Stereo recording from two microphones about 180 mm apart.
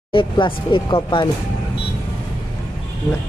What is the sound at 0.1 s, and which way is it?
Speech, 30° left (ahead or behind).